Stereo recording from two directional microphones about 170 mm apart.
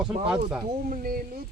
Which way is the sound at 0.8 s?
55° right (ahead or behind).